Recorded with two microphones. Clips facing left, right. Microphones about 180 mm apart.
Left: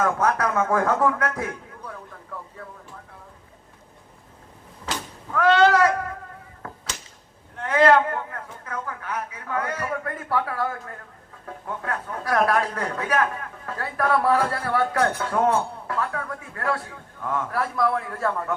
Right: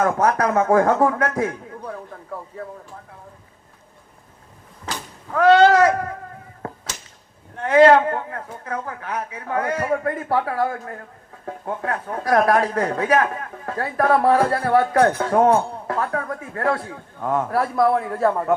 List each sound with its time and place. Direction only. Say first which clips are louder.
0.0 s speech: right 4 dB; 40° right (ahead or behind)
5.3 s speech: right 4 dB; 40° right (ahead or behind)
7.6 s speech: right 5 dB; 35° right (ahead or behind)